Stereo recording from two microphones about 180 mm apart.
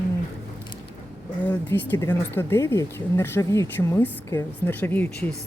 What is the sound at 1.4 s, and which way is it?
Speech, 10° left (ahead or behind).